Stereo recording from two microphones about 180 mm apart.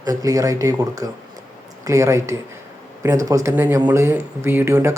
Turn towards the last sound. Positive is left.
turn(degrees=-15)  # may be behind; listen again after turning